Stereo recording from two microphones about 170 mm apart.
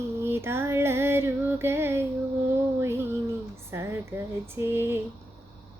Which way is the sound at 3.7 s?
15° right (ahead or behind).